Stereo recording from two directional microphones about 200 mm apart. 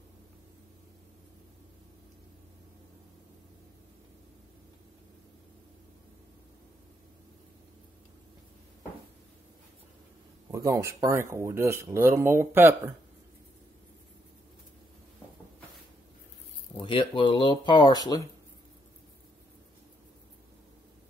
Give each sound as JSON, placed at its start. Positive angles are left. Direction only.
{"t": 10.5, "sound": "speech", "side_deg": -15}
{"t": 16.7, "sound": "speech", "side_deg": 25}